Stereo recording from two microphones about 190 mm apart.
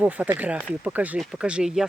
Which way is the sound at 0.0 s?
10° right (ahead or behind).